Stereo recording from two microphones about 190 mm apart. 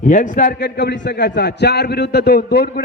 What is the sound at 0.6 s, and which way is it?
A man's voice, 65° left (ahead or behind).